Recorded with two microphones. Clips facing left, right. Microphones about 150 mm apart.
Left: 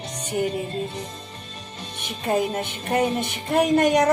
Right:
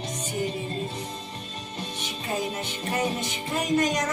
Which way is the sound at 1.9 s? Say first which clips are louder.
Left 8 dB; 60° left (ahead or behind).